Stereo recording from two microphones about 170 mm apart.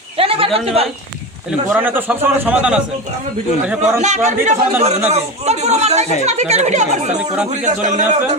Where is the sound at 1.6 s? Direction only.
10° right (ahead or behind).